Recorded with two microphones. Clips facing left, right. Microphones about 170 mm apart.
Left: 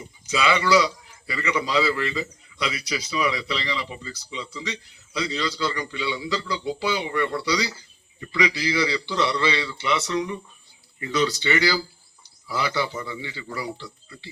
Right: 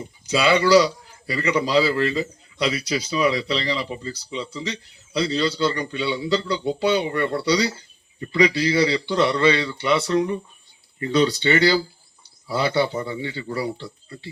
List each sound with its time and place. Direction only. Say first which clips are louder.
0.3 s a man's voice: right 4 dB; 35° right (ahead or behind)